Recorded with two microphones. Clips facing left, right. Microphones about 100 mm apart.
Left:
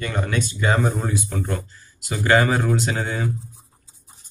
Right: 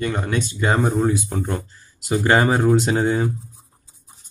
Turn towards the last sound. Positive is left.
turn(degrees=-25)  # may be behind; listen again after turning